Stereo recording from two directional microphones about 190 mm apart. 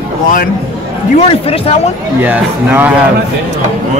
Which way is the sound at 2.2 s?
10° right (ahead or behind).